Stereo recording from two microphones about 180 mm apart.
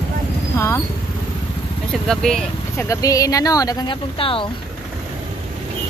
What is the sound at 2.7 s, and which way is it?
Speech, 20° left (ahead or behind).